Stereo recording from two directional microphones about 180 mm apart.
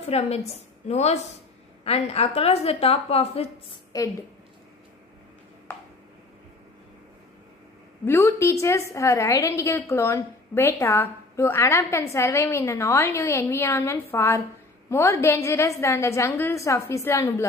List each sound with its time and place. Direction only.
0.0 s a woman's voice: 35° left (ahead or behind)
3.9 s a woman's voice: 20° left (ahead or behind)
8.0 s a woman's voice: 15° left (ahead or behind)